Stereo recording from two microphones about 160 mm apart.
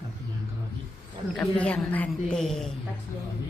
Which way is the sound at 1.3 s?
5° left (ahead or behind).